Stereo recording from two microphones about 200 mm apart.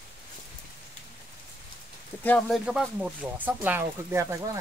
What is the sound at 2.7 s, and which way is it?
Speech, 5° right (ahead or behind).